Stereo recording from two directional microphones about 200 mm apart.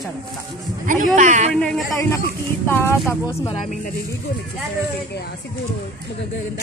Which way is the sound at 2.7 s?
10° left (ahead or behind).